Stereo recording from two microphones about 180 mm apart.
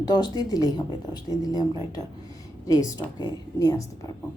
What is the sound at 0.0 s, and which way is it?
A woman's voice, 25° left (ahead or behind).